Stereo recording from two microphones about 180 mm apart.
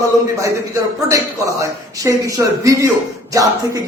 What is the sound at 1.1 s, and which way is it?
A man's voice, 20° right (ahead or behind).